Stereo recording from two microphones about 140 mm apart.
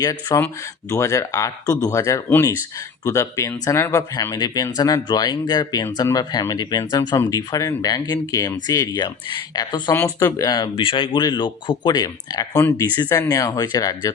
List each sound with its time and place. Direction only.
0.0 s speech: 25° left (ahead or behind)
9.9 s speech: 15° left (ahead or behind)